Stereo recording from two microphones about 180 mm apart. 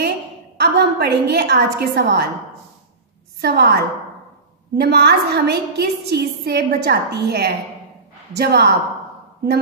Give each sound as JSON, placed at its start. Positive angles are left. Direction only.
{"t": 0.6, "sound": "a woman's voice", "side_deg": -65}
{"t": 3.3, "sound": "a woman's voice", "side_deg": -60}